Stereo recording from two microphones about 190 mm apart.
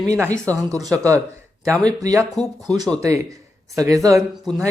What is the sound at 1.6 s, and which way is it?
Speech, 5° left (ahead or behind).